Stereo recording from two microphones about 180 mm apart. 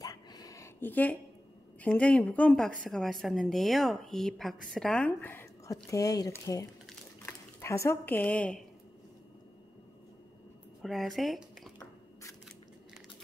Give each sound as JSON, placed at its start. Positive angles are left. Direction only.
{"t": 0.0, "sound": "a sound", "side_deg": 20}
{"t": 1.8, "sound": "a woman's voice", "side_deg": 5}
{"t": 10.8, "sound": "speech", "side_deg": 0}